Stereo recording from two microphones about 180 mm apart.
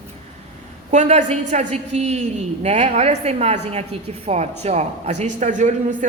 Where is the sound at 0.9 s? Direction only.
40° right (ahead or behind).